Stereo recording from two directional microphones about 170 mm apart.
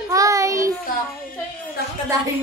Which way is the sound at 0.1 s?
20° right (ahead or behind).